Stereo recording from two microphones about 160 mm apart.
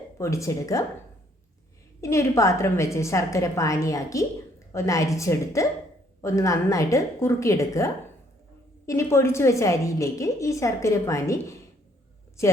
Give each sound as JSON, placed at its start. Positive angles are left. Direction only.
{"t": 0.2, "sound": "a woman's voice", "side_deg": 20}
{"t": 2.0, "sound": "a woman's voice", "side_deg": 15}
{"t": 8.9, "sound": "a woman's voice", "side_deg": 15}